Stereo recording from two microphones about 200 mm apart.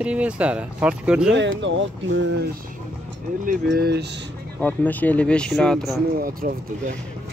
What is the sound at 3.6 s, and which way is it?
Speech, 55° right (ahead or behind).